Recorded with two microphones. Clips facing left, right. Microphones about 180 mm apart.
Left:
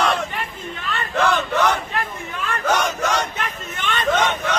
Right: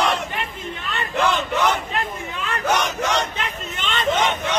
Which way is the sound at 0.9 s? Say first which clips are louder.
Left 1 dB; 15° right (ahead or behind).